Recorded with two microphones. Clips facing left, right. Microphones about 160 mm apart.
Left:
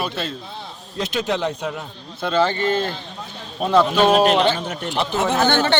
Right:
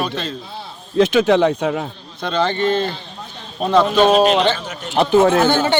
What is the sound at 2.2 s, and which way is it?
Speech, 5° left (ahead or behind).